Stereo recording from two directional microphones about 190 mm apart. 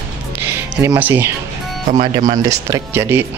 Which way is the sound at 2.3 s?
20° right (ahead or behind).